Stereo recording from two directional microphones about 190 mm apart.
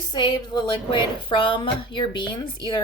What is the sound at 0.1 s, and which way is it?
Speech, 25° left (ahead or behind).